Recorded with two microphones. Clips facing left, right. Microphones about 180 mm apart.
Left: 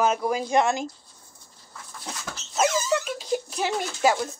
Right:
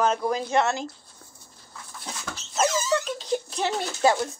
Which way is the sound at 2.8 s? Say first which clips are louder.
Even; 10° left (ahead or behind).